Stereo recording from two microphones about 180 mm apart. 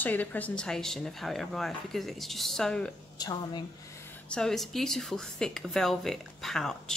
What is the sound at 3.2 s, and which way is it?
Speech, 20° left (ahead or behind).